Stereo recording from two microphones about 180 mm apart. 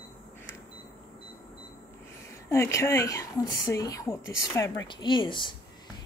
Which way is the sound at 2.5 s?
15° left (ahead or behind).